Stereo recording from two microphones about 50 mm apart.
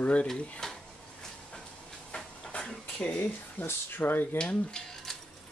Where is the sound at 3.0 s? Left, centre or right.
Left.